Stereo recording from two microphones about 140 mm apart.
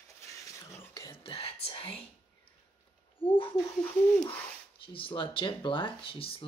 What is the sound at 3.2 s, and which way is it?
Speech, 40° left (ahead or behind).